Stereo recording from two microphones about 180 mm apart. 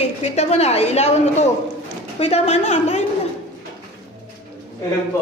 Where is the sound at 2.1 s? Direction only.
35° left (ahead or behind).